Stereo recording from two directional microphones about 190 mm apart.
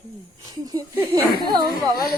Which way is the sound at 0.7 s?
15° right (ahead or behind).